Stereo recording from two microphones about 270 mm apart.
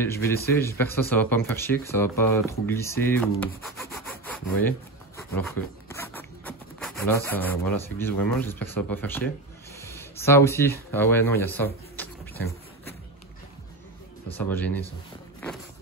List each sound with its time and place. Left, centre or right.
0.0 s speech: centre
9.8 s a sound: centre
14.3 s speech: centre